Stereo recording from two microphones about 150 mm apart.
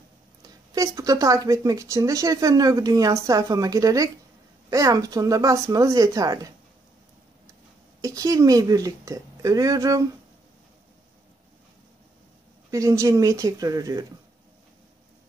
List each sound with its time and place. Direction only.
0.4 s speech: 25° right (ahead or behind)
8.0 s speech: 20° right (ahead or behind)
12.7 s speech: 20° right (ahead or behind)